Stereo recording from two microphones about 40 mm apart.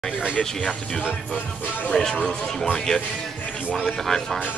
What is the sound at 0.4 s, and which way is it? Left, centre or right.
Speech, left.